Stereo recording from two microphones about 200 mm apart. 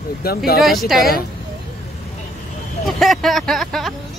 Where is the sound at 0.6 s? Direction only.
Centre (ahead or behind).